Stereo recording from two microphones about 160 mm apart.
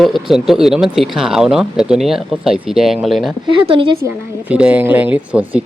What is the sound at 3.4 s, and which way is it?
Speech, 30° right (ahead or behind).